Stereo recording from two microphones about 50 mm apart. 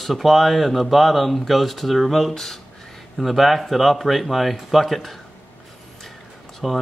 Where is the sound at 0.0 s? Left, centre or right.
Centre.